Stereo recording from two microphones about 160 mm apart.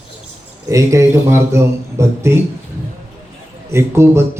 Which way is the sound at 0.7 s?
20° right (ahead or behind).